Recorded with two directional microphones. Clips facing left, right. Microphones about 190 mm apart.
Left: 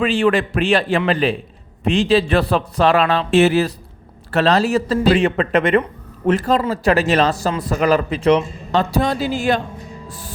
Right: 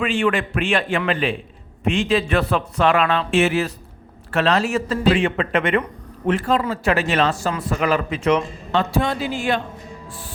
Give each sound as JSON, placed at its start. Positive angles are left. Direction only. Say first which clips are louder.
{"t": 0.0, "sound": "a man's voice", "louder": "left 4 dB", "side_deg": 35}